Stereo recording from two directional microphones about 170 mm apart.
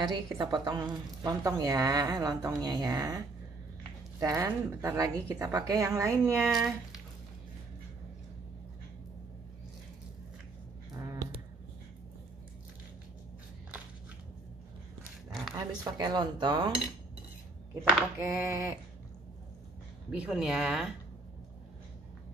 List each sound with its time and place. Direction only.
0.0 s a woman's voice: 25° right (ahead or behind)
6.5 s speech: centre (ahead or behind)
10.9 s a sound: 20° right (ahead or behind)
15.5 s a woman's voice: 25° right (ahead or behind)
18.2 s a sound: 15° right (ahead or behind)
20.1 s speech: 5° right (ahead or behind)